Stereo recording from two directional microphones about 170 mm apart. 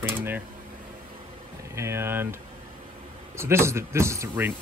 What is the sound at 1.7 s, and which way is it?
Speech, 15° right (ahead or behind).